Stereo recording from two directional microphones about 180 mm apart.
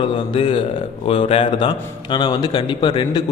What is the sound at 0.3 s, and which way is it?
A man's voice, 30° left (ahead or behind).